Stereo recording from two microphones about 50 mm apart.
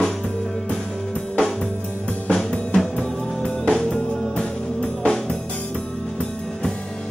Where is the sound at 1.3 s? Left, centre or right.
Centre.